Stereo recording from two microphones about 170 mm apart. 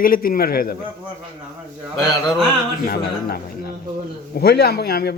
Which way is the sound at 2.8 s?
60° left (ahead or behind).